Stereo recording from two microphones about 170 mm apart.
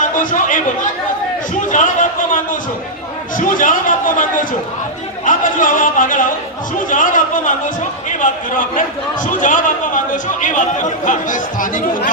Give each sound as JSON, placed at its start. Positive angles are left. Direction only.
{"t": 0.2, "sound": "a man's voice", "side_deg": 50}
{"t": 1.7, "sound": "a sound", "side_deg": 45}
{"t": 3.3, "sound": "a man's voice", "side_deg": 50}